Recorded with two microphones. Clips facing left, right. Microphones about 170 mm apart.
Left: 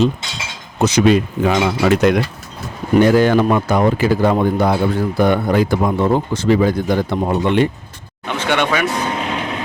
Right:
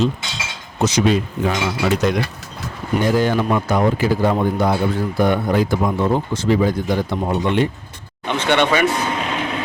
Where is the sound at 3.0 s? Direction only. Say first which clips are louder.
Left 5 dB; 75° left (ahead or behind).